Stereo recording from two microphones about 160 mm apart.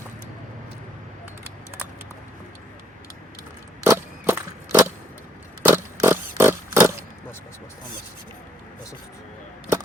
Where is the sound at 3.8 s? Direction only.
15° right (ahead or behind).